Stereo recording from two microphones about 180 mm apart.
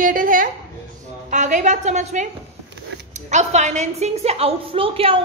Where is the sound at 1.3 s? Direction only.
45° right (ahead or behind).